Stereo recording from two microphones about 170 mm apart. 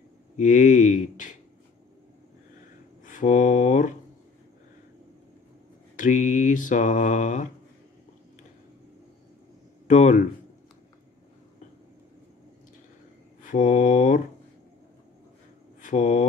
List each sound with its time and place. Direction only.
0.4 s mantra: 50° left (ahead or behind)
3.1 s mantra: 50° left (ahead or behind)
5.9 s mantra: 50° left (ahead or behind)
9.8 s speech: 45° left (ahead or behind)
13.4 s mantra: 50° left (ahead or behind)
15.8 s speech: 45° left (ahead or behind)